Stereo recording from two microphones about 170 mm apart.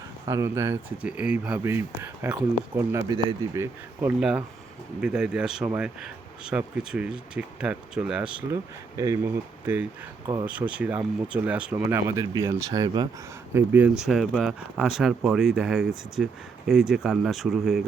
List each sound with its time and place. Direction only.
0.3 s speech: 15° right (ahead or behind)
4.2 s speech: 5° right (ahead or behind)
9.0 s speech: 15° right (ahead or behind)
13.5 s speech: 10° right (ahead or behind)